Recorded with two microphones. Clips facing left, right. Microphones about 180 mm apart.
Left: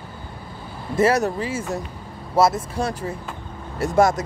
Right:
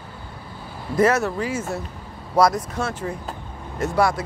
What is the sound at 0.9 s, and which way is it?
Speech, 25° left (ahead or behind).